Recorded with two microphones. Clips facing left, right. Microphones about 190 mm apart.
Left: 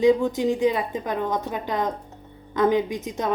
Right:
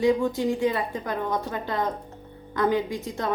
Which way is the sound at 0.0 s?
20° left (ahead or behind).